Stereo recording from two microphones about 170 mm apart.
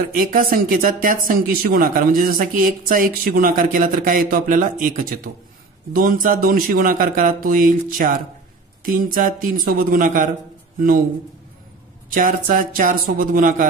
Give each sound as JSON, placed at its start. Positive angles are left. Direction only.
{"t": 0.0, "sound": "speech", "side_deg": -55}
{"t": 12.1, "sound": "speech", "side_deg": -55}